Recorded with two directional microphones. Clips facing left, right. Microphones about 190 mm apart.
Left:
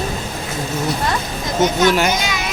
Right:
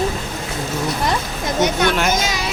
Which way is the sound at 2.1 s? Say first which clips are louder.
Right 1 dB; 40° right (ahead or behind).